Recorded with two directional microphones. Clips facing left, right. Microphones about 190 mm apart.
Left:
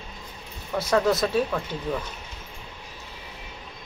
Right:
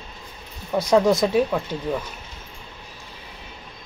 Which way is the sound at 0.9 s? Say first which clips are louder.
Right 4 dB; 15° right (ahead or behind).